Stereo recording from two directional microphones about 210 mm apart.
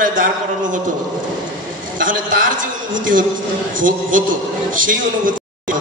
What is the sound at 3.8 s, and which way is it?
A man's voice, 40° right (ahead or behind).